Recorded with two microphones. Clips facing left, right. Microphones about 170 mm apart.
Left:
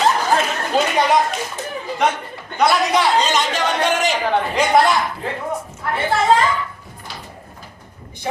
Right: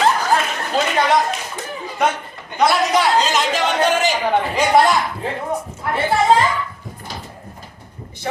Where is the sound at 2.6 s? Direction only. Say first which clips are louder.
Even; centre (ahead or behind).